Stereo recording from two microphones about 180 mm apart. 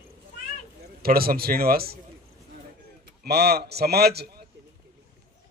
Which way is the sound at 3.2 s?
60° right (ahead or behind).